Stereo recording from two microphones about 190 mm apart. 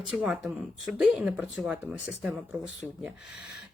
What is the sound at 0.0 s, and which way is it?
Speech, 5° right (ahead or behind).